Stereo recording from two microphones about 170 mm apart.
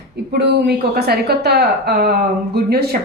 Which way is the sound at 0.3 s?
75° right (ahead or behind).